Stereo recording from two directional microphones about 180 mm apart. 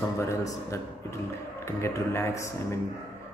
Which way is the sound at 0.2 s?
15° left (ahead or behind).